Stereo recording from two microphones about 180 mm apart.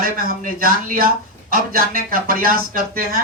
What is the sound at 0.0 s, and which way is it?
Speech, 50° right (ahead or behind).